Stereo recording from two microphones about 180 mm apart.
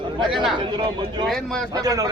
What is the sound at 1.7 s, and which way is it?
Speech, 20° right (ahead or behind).